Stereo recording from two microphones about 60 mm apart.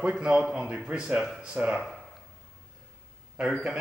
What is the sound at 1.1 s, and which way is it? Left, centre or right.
Speech, centre.